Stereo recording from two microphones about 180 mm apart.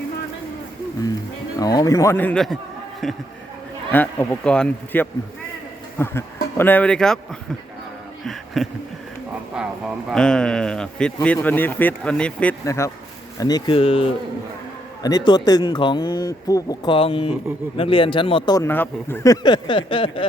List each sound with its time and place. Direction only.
1.5 s speech: 20° left (ahead or behind); by 2.6 s 5° left (ahead or behind)
3.9 s speech: 10° left (ahead or behind)
8.2 s a sound: centre (ahead or behind)
9.6 s speech: 5° right (ahead or behind); by 20.2 s 30° left (ahead or behind)